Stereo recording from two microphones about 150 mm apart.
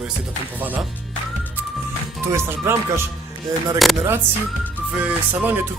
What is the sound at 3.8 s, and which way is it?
Speech, centre (ahead or behind).